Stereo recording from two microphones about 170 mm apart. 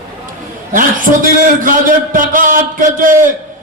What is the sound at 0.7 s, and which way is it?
A man's voice, 50° right (ahead or behind).